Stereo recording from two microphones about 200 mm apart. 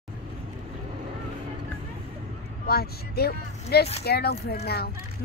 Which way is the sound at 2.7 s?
50° left (ahead or behind).